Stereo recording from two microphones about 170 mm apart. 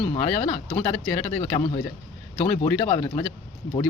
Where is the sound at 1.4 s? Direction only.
30° left (ahead or behind).